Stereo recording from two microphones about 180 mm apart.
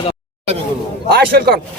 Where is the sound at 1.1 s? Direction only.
60° right (ahead or behind).